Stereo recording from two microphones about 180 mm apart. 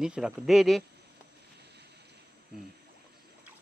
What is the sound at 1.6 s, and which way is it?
Boat, 65° right (ahead or behind).